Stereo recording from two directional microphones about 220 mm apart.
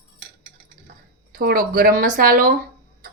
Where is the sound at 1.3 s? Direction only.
40° right (ahead or behind).